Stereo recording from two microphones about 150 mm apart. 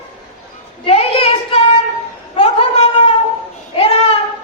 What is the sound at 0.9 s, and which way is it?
Child singing, 40° left (ahead or behind).